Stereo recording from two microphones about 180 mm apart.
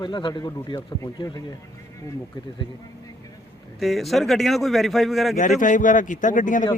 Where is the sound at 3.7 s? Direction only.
Centre (ahead or behind).